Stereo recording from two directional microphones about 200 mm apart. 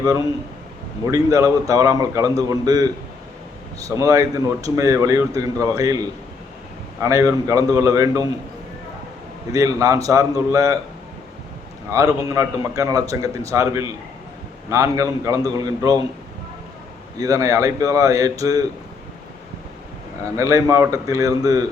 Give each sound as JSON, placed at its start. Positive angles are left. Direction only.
{"t": 1.0, "sound": "speech", "side_deg": -15}
{"t": 9.5, "sound": "speech", "side_deg": -15}
{"t": 11.9, "sound": "speech", "side_deg": -15}
{"t": 17.2, "sound": "speech", "side_deg": -15}
{"t": 20.3, "sound": "speech", "side_deg": -15}